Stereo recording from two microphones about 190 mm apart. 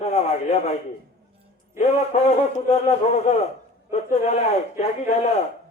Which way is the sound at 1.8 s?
35° left (ahead or behind).